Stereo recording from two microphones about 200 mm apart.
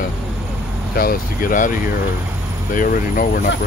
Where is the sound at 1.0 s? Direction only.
45° left (ahead or behind).